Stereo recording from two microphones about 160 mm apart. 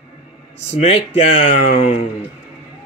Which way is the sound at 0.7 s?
40° left (ahead or behind).